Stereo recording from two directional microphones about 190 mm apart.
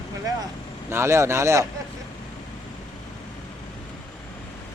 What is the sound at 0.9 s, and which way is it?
Speech, 15° right (ahead or behind).